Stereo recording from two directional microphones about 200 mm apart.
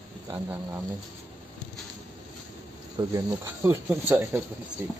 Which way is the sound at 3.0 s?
20° right (ahead or behind).